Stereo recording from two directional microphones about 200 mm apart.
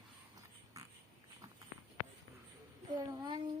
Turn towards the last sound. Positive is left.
turn(degrees=-20)  # may be behind; listen again after turning